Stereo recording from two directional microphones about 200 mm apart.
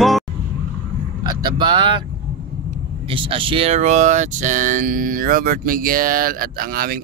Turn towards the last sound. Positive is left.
turn(degrees=-45)  # may be behind; listen again after turning